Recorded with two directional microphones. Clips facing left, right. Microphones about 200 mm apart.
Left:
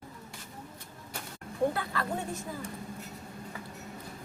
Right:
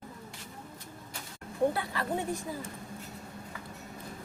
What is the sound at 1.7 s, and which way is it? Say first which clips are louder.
Speech: right 1 dB; 15° right (ahead or behind).